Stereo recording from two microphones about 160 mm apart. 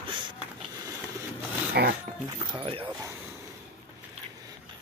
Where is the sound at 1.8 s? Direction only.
90° right.